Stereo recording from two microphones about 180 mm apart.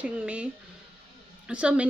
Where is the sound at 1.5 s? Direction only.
5° right (ahead or behind).